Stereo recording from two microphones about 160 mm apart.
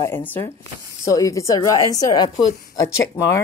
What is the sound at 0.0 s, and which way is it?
Speech, 15° left (ahead or behind).